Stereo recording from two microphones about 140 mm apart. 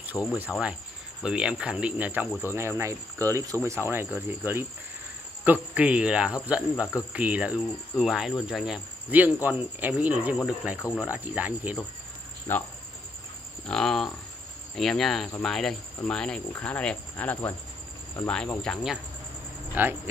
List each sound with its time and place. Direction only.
0.3 s speech: 5° right (ahead or behind)
5.4 s speech: 10° right (ahead or behind)
12.5 s speech: 15° left (ahead or behind)
13.7 s speech: 5° left (ahead or behind)
19.7 s speech: 15° right (ahead or behind)